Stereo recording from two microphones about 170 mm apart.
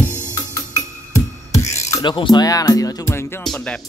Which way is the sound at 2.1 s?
25° left (ahead or behind).